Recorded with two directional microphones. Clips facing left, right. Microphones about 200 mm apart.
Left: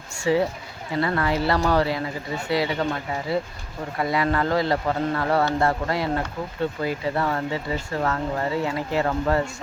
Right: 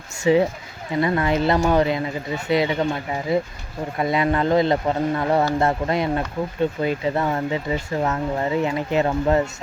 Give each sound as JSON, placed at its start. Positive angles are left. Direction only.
{"t": 0.3, "sound": "speech", "side_deg": -20}